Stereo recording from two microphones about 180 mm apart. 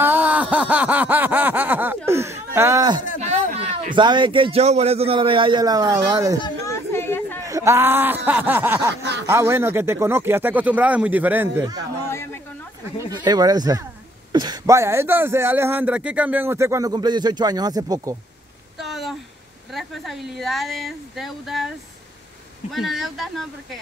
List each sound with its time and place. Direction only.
0.0 s a sound: 10° right (ahead or behind)
3.2 s a man's voice: 35° right (ahead or behind); by 6.4 s 20° right (ahead or behind)
6.4 s chatter: 15° left (ahead or behind)
7.4 s speech: 15° right (ahead or behind)
13.2 s speech: 20° right (ahead or behind)
18.8 s a sound: centre (ahead or behind)
19.7 s a woman's voice: centre (ahead or behind)